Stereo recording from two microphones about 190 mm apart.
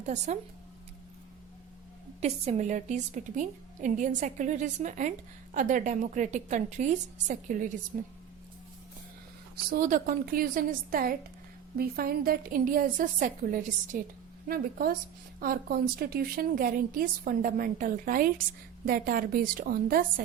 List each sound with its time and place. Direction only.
0.0 s a woman's voice: 40° right (ahead or behind)
2.2 s a woman's voice: 35° right (ahead or behind)
9.6 s speech: 45° right (ahead or behind)